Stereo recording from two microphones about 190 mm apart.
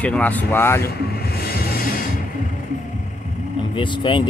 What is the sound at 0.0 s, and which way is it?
Speech, 5° left (ahead or behind).